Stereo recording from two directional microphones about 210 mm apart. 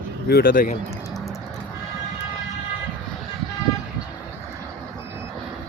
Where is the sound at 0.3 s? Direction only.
45° left (ahead or behind).